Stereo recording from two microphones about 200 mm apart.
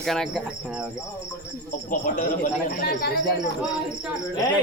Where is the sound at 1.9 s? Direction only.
40° left (ahead or behind).